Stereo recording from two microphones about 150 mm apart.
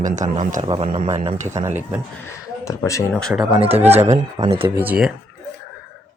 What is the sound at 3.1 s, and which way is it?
Speech, 5° left (ahead or behind).